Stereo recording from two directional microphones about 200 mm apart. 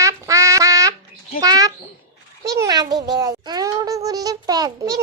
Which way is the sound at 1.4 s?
20° right (ahead or behind).